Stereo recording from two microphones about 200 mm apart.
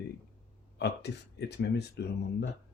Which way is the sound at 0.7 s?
55° left (ahead or behind).